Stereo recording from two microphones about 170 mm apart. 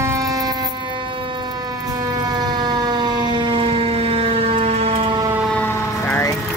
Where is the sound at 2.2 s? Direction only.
25° right (ahead or behind).